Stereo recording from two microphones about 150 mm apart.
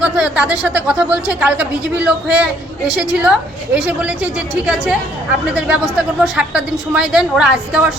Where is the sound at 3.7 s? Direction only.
10° right (ahead or behind).